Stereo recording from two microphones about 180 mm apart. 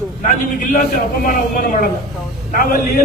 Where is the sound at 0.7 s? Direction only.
50° left (ahead or behind).